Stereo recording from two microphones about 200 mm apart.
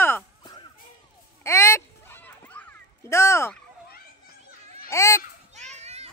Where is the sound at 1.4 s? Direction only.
15° left (ahead or behind).